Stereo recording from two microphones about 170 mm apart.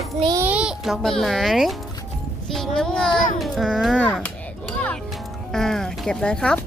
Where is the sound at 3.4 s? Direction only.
Centre (ahead or behind).